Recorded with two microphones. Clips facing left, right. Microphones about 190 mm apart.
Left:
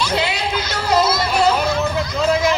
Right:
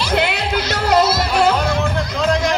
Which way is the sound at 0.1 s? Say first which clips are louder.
Right 2 dB; 60° right (ahead or behind).